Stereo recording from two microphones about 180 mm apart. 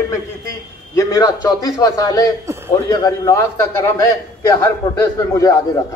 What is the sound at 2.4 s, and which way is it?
Speech, 15° right (ahead or behind).